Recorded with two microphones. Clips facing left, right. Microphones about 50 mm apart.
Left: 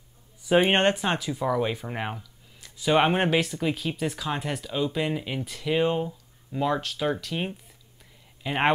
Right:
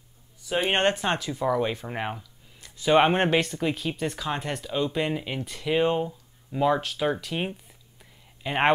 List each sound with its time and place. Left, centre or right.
0.5 s speech: centre